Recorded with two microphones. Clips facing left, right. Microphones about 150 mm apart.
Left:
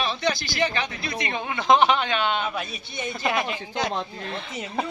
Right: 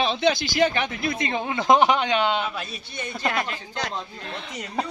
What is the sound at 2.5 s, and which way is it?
A woman's voice, centre (ahead or behind).